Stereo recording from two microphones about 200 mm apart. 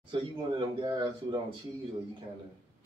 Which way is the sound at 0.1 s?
25° right (ahead or behind).